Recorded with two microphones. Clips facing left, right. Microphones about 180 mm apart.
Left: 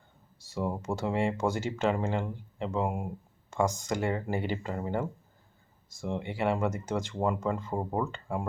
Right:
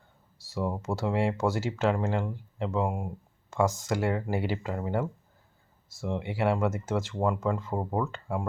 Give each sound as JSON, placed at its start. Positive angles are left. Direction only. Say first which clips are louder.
{"t": 0.4, "sound": "speech", "louder": "right 1 dB", "side_deg": 0}